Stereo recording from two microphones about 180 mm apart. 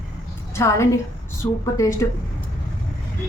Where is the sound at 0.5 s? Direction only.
15° left (ahead or behind).